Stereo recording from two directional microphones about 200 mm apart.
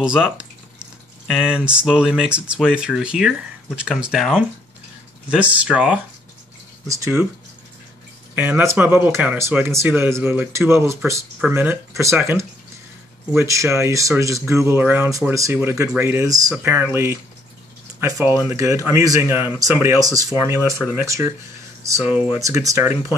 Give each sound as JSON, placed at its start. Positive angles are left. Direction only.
{"t": 0.0, "sound": "speech", "side_deg": -5}
{"t": 8.4, "sound": "speech", "side_deg": -10}